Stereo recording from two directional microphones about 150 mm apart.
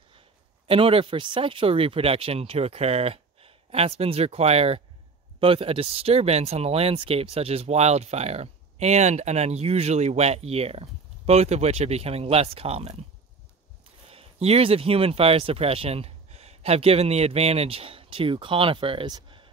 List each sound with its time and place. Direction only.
0.7 s speech: 35° right (ahead or behind)
14.0 s speech: 40° right (ahead or behind)